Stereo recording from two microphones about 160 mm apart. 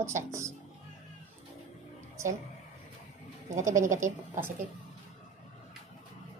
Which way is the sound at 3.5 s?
50° right (ahead or behind).